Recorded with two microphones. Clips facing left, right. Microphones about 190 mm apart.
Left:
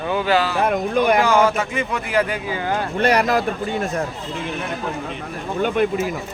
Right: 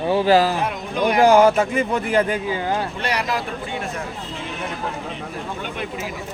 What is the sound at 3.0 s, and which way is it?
Speech, 50° left (ahead or behind).